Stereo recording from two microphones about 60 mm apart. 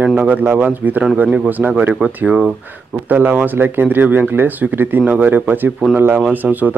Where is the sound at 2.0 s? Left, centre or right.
Right.